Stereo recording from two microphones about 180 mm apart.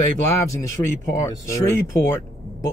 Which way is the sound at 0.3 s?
15° left (ahead or behind).